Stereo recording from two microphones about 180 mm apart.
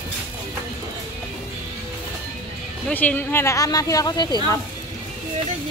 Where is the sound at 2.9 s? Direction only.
10° left (ahead or behind).